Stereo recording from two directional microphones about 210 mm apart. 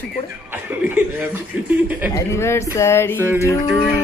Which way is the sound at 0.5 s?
10° right (ahead or behind).